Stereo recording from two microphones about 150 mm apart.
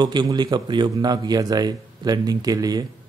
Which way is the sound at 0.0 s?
30° right (ahead or behind).